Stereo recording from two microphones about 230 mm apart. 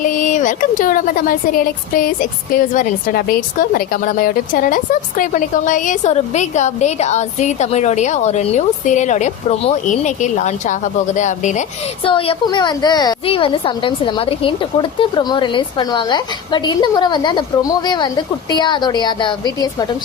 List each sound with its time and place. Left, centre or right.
0.0 s a woman's voice: left; by 19.9 s centre